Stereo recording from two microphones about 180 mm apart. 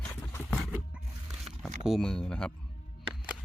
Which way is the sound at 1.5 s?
35° right (ahead or behind).